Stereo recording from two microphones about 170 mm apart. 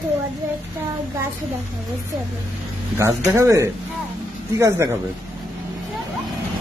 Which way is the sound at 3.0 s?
15° right (ahead or behind).